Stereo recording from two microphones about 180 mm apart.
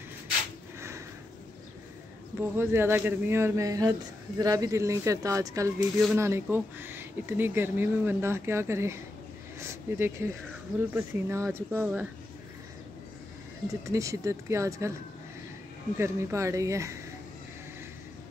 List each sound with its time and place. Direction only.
0.7 s sniff: 15° right (ahead or behind)
2.4 s speech: 10° right (ahead or behind)
13.7 s speech: 15° right (ahead or behind)
16.0 s speech: 15° right (ahead or behind)